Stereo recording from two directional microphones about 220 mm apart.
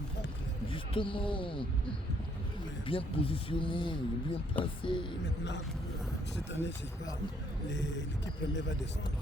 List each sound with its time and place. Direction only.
0.7 s speech: 25° left (ahead or behind)
2.8 s speech: 25° left (ahead or behind)
6.5 s speech: 55° left (ahead or behind)